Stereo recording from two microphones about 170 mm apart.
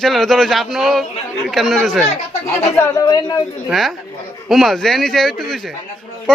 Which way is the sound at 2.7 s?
20° left (ahead or behind).